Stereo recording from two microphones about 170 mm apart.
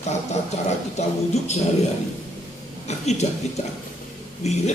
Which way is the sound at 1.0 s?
40° left (ahead or behind).